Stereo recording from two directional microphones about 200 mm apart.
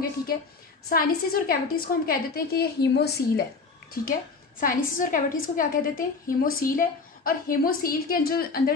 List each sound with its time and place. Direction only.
0.8 s a woman's voice: 45° left (ahead or behind)